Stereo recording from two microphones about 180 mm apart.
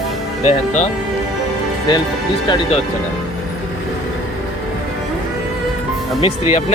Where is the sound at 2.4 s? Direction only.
25° left (ahead or behind).